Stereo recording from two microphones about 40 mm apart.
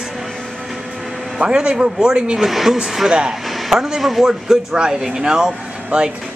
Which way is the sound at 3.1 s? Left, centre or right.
Right.